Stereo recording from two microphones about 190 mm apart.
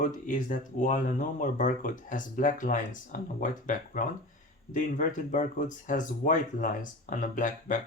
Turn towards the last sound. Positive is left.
turn(degrees=45)  # may be behind; listen again after turning